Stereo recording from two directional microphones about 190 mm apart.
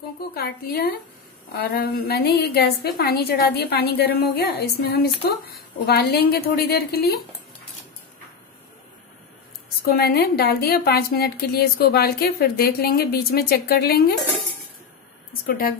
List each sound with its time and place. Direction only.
0.3 s a woman's voice: 55° left (ahead or behind)
9.8 s a woman's voice: 55° left (ahead or behind)
15.4 s a woman's voice: 50° left (ahead or behind)